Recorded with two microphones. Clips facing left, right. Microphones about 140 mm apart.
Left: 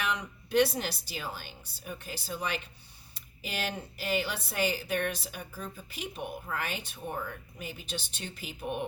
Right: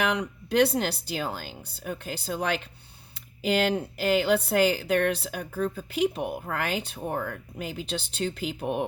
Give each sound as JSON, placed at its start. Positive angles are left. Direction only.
{"t": 0.0, "sound": "a woman's voice", "side_deg": -75}